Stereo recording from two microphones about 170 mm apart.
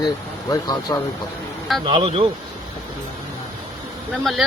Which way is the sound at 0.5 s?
20° left (ahead or behind).